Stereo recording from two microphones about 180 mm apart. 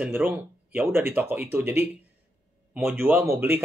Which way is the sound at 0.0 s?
10° right (ahead or behind).